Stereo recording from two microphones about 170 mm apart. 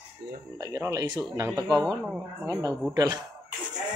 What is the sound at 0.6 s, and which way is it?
Speech, 20° right (ahead or behind).